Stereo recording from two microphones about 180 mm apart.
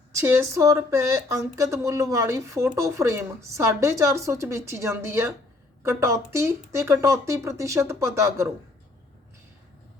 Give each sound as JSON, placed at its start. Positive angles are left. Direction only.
{"t": 0.1, "sound": "speech", "side_deg": -15}